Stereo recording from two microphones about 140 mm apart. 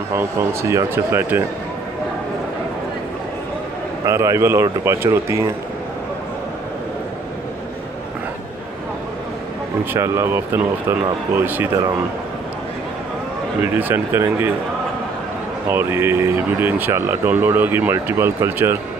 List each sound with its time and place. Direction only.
0.1 s speech: 20° right (ahead or behind)
4.0 s speech: 20° right (ahead or behind)
9.9 s speech: 20° right (ahead or behind)
13.7 s speech: 15° right (ahead or behind)
15.7 s speech: 15° right (ahead or behind)